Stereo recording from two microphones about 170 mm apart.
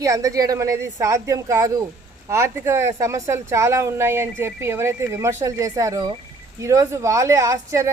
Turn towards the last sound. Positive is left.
turn(degrees=-15)  # may be behind; listen again after turning